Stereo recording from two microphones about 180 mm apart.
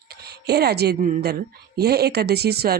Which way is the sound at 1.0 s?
45° right (ahead or behind).